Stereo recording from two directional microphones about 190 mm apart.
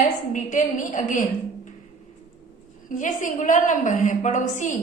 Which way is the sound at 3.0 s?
40° left (ahead or behind).